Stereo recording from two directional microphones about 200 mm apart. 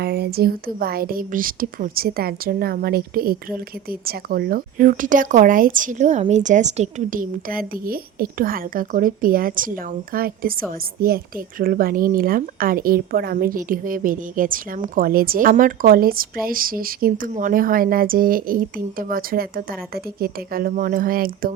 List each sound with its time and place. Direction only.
0.0 s speech: 50° right (ahead or behind)